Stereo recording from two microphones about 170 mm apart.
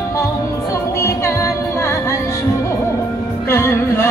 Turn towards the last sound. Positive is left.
turn(degrees=15)  # may be behind; listen again after turning